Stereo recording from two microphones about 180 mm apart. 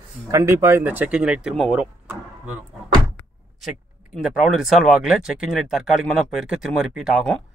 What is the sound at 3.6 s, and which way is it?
Speech, centre (ahead or behind).